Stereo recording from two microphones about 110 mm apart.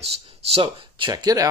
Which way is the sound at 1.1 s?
35° right (ahead or behind).